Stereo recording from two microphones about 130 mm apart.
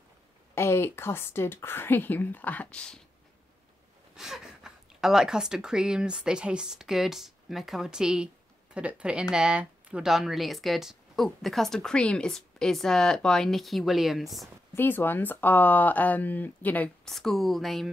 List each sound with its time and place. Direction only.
0.6 s speech: 20° left (ahead or behind)
4.1 s a woman's voice: 5° right (ahead or behind)
14.8 s speech: 15° left (ahead or behind)